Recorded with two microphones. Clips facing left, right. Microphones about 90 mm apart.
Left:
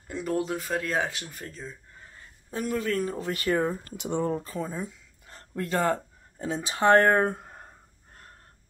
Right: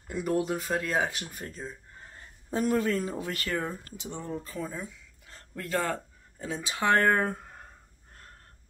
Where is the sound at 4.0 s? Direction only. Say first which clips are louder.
Left 11 dB; 65° left (ahead or behind).